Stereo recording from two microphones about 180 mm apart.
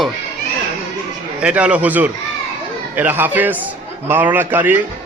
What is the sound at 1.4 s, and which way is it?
A man's voice, 5° right (ahead or behind).